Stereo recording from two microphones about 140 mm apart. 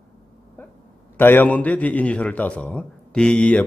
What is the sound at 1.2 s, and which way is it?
A man's voice, 15° left (ahead or behind).